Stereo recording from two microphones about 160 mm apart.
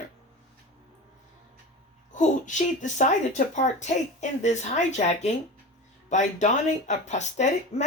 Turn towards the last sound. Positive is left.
turn(degrees=45)  # may be behind; listen again after turning